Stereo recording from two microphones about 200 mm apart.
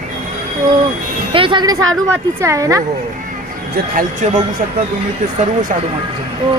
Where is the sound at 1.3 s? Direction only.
25° right (ahead or behind).